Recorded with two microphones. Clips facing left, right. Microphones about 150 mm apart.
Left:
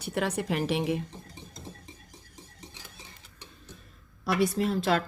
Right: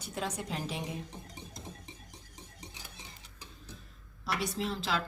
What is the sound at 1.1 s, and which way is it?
Stir, 15° right (ahead or behind).